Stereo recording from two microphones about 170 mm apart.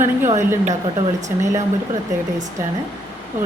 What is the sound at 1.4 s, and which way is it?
A woman's voice, 20° right (ahead or behind).